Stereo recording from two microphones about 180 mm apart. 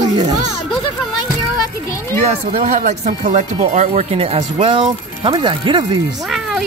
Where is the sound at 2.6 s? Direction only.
40° right (ahead or behind).